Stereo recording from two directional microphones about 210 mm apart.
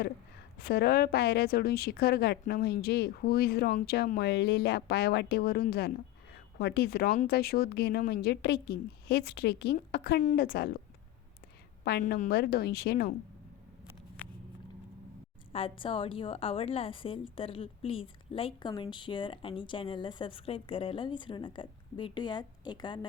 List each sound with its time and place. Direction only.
0.6 s a woman's voice: 50° left (ahead or behind)
11.9 s a woman's voice: 50° left (ahead or behind)
15.5 s a woman's voice: 25° left (ahead or behind)